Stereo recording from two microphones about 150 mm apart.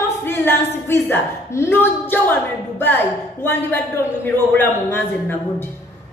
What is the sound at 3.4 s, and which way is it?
Speech, 15° left (ahead or behind).